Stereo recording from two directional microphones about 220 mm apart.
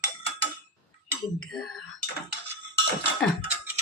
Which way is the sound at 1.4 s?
Centre (ahead or behind).